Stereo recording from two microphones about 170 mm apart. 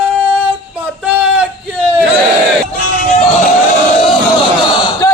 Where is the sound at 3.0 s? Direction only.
45° left (ahead or behind).